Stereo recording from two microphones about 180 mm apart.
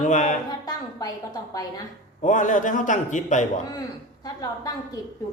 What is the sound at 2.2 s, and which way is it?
Speech, 45° left (ahead or behind).